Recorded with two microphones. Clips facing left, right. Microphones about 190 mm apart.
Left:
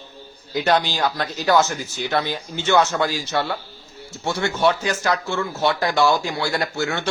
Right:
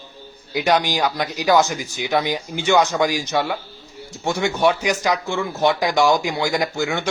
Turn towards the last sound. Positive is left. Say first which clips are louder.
# right 2 dB
turn(degrees=-15)  # may be behind; listen again after turning